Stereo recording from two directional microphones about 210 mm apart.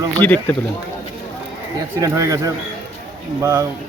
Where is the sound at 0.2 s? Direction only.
10° left (ahead or behind).